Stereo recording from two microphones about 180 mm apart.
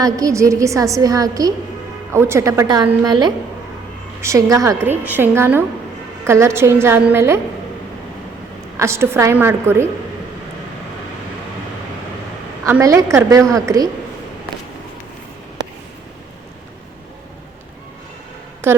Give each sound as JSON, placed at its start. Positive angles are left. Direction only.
{"t": 0.0, "sound": "a woman's voice", "side_deg": -20}
{"t": 8.8, "sound": "a woman's voice", "side_deg": -15}
{"t": 12.6, "sound": "a woman's voice", "side_deg": -15}
{"t": 18.6, "sound": "a woman's voice", "side_deg": -10}